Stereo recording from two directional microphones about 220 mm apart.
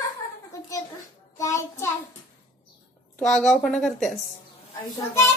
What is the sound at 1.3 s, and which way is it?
Child singing, 15° left (ahead or behind).